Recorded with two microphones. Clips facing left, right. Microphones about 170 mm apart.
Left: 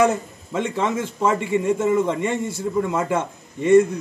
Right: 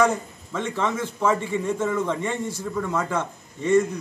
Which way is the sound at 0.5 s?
15° left (ahead or behind).